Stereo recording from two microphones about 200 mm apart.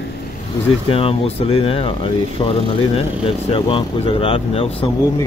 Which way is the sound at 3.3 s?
25° left (ahead or behind).